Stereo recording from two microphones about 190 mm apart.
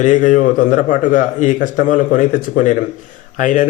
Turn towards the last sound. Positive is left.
turn(degrees=40)  # may be behind; listen again after turning